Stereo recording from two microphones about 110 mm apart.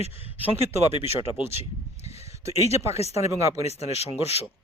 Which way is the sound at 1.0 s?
65° left (ahead or behind).